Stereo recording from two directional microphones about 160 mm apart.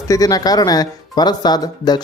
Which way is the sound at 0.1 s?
20° left (ahead or behind).